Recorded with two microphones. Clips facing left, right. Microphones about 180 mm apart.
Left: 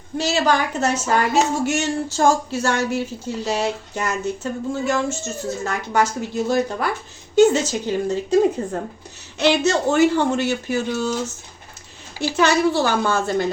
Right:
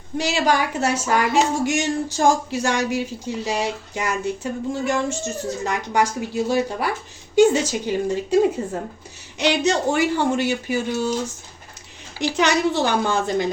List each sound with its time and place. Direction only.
0.2 s speech: 15° right (ahead or behind)
9.4 s speech: 15° right (ahead or behind)
12.2 s speech: 15° right (ahead or behind)